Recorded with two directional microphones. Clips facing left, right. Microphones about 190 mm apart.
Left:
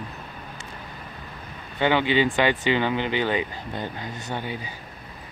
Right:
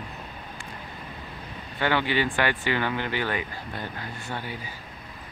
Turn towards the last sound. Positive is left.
turn(degrees=20)  # may be behind; listen again after turning